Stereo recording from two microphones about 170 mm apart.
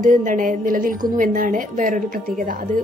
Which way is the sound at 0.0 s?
50° right (ahead or behind).